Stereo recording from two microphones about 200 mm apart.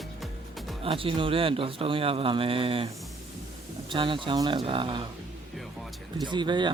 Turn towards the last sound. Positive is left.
turn(degrees=-25)  # may be behind; listen again after turning